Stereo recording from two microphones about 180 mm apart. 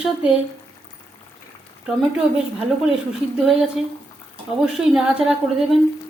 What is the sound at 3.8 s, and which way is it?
Speech, 35° left (ahead or behind).